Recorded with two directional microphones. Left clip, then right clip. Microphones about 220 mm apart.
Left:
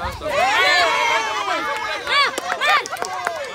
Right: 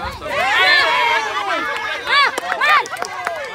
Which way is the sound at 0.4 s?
25° left (ahead or behind).